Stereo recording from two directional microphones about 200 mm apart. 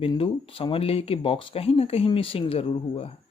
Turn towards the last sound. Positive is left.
turn(degrees=30)  # may be behind; listen again after turning